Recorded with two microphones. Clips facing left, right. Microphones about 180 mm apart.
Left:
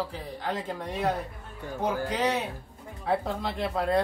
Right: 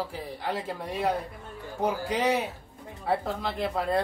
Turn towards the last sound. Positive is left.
turn(degrees=-5)  # may be behind; listen again after turning